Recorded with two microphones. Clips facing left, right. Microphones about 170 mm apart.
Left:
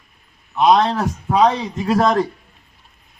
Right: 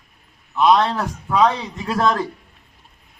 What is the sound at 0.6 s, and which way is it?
Speech, 20° left (ahead or behind).